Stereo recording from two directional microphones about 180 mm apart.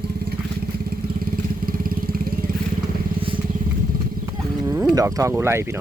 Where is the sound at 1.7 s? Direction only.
55° right (ahead or behind).